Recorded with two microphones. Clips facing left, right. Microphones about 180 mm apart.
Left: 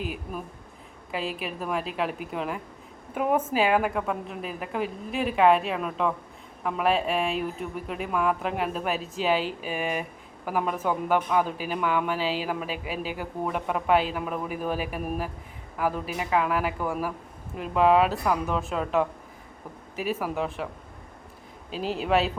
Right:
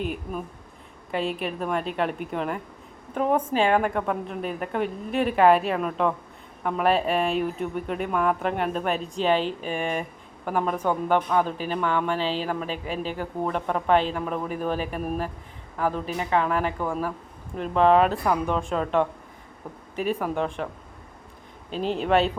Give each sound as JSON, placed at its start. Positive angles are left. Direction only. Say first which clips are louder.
{"t": 0.0, "sound": "a woman's voice", "louder": "right 3 dB", "side_deg": 0}
{"t": 21.7, "sound": "a woman's voice", "louder": "right 2 dB", "side_deg": 5}